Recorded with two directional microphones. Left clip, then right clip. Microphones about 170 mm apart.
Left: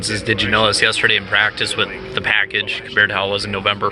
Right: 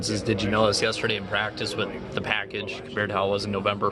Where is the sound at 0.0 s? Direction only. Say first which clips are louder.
Left 8 dB; 10° right (ahead or behind).